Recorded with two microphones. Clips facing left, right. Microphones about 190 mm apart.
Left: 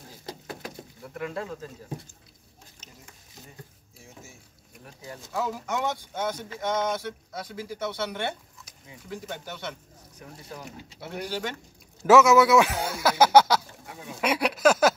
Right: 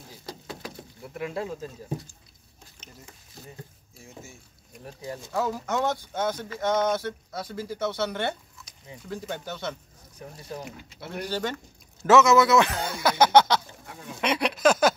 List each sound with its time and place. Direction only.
1.0 s speech: 10° right (ahead or behind)
4.8 s speech: 30° right (ahead or behind)
5.3 s speech: 10° left (ahead or behind)
11.0 s speech: 10° left (ahead or behind)
14.2 s a sound: 5° left (ahead or behind)